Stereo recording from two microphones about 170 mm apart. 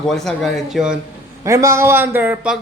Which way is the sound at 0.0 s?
Centre (ahead or behind).